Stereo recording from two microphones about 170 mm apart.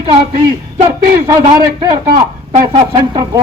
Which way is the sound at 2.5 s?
40° right (ahead or behind).